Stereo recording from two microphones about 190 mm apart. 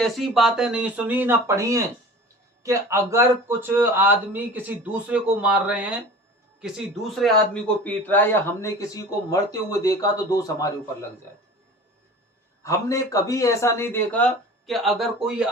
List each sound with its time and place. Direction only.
0.0 s speech: centre (ahead or behind); by 10.7 s 20° left (ahead or behind)
12.6 s speech: 15° left (ahead or behind); by 15.4 s 5° right (ahead or behind)